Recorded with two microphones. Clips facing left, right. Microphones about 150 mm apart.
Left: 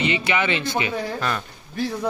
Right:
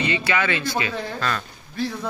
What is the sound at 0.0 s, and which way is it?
A man's voice, 20° left (ahead or behind).